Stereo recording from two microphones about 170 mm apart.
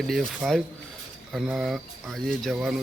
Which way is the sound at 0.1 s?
Centre (ahead or behind).